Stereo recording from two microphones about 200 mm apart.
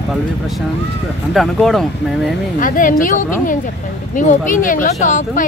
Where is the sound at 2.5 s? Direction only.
40° left (ahead or behind).